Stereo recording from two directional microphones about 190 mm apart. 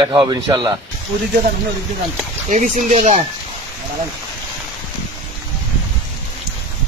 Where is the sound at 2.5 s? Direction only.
40° right (ahead or behind).